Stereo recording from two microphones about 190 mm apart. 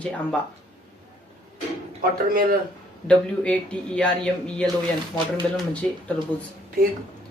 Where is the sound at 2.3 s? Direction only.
50° right (ahead or behind).